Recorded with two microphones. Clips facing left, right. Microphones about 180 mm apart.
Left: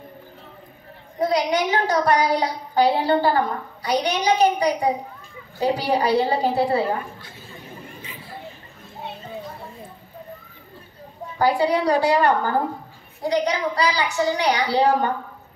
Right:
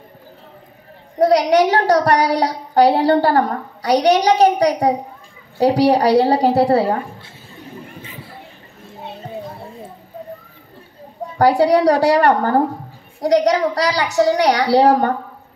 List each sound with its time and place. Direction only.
1.2 s a woman's voice: 70° right (ahead or behind)
11.3 s a woman's voice: 70° right (ahead or behind)